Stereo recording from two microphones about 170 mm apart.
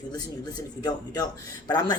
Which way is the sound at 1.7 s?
25° left (ahead or behind).